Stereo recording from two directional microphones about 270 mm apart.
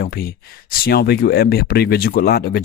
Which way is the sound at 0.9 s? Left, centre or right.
Left.